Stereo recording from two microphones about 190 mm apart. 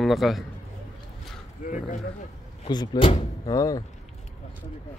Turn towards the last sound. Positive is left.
turn(degrees=20)  # may be behind; listen again after turning